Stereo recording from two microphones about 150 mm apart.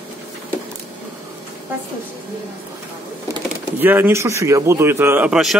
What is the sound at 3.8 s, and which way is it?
A man's voice, 15° right (ahead or behind).